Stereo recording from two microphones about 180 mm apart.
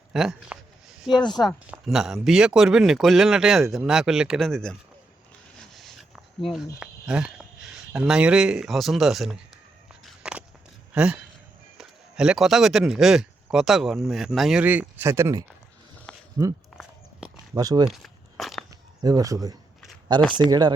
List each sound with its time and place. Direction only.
0.1 s a sound: centre (ahead or behind)
1.4 s speech: 5° right (ahead or behind)
9.9 s walk: centre (ahead or behind)
10.9 s speech: 5° right (ahead or behind); by 16.5 s 25° right (ahead or behind)
16.7 s a sound: 5° right (ahead or behind)
17.5 s speech: 20° right (ahead or behind)
17.8 s walk: centre (ahead or behind)
18.7 s a sound: 20° right (ahead or behind)
20.1 s speech: 25° right (ahead or behind)